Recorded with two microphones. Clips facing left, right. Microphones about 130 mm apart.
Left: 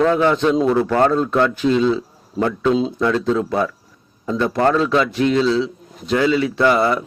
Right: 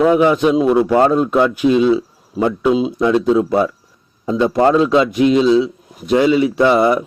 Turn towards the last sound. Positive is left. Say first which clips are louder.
# right 3 dB
turn(degrees=-20)  # may be behind; listen again after turning